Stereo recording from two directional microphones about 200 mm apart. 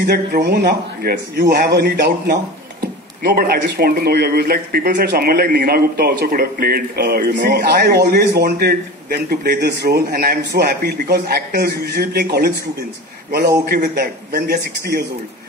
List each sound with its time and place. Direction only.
0.0 s speech: 50° right (ahead or behind)
13.7 s speech: 45° right (ahead or behind)